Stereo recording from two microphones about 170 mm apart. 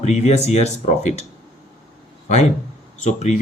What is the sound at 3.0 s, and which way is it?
Speech, 45° left (ahead or behind).